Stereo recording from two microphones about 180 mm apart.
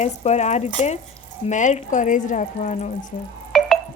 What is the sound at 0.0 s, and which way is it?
Speech, 40° left (ahead or behind).